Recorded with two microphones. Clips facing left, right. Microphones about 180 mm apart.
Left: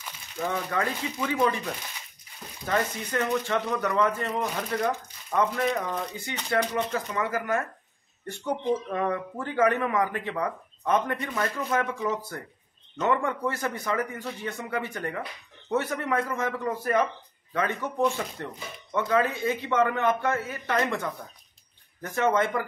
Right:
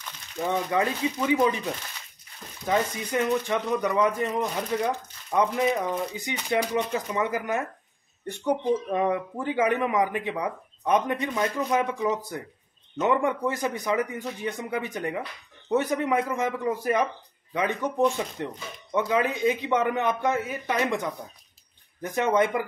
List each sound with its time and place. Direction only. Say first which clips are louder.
0.4 s speech: right 3 dB; 15° right (ahead or behind)
2.6 s speech: right 2 dB; 15° right (ahead or behind)